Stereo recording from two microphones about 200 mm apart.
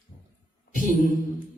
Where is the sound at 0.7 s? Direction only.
40° right (ahead or behind).